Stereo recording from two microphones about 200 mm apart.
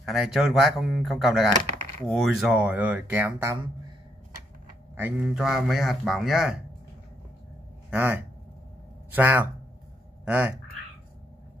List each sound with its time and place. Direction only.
0.0 s a man's voice: centre (ahead or behind)
4.9 s a man's voice: 5° right (ahead or behind)
7.9 s speech: 10° right (ahead or behind)